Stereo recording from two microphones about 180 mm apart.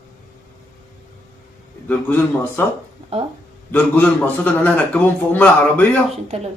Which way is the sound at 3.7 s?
10° left (ahead or behind).